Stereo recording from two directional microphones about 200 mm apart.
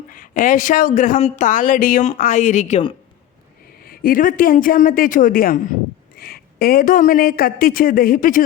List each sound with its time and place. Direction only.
0.1 s a woman's voice: 40° left (ahead or behind)
3.8 s speech: 45° left (ahead or behind)